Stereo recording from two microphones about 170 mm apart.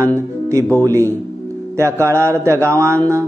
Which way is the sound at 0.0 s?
20° right (ahead or behind).